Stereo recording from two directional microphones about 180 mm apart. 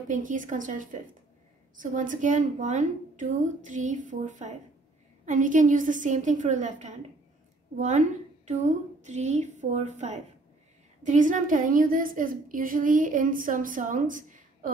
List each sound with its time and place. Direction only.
0.1 s a woman's voice: 45° right (ahead or behind)
8.5 s a woman's voice: 40° right (ahead or behind)